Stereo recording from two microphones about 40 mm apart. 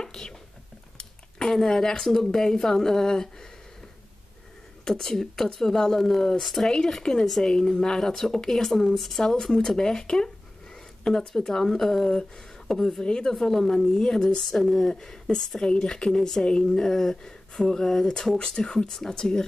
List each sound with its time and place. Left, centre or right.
0.0 s a sound: centre
1.6 s speech: centre
4.8 s a woman's voice: centre
7.0 s speech: centre
13.0 s speech: centre
13.3 s speech: centre